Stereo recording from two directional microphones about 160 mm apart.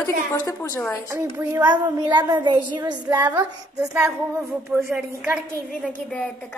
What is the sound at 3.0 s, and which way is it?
A woman's voice, 10° right (ahead or behind).